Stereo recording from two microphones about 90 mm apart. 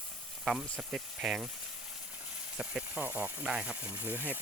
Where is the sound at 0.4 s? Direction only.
5° right (ahead or behind).